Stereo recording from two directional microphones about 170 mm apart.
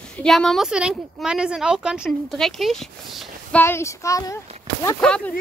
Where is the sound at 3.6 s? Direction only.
15° left (ahead or behind).